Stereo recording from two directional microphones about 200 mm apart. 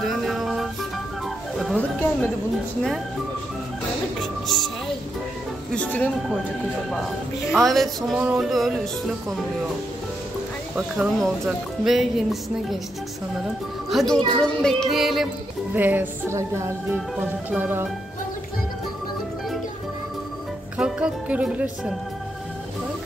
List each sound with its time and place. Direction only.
0.0 s music: centre (ahead or behind)
1.6 s speech: centre (ahead or behind)
4.2 s music: centre (ahead or behind)
5.8 s speech: 5° left (ahead or behind)
11.0 s speech: centre (ahead or behind)
13.8 s speech: centre (ahead or behind)
20.7 s speech: 5° right (ahead or behind)